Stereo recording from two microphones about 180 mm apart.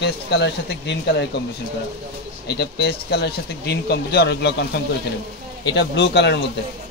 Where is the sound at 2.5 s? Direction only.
65° left (ahead or behind).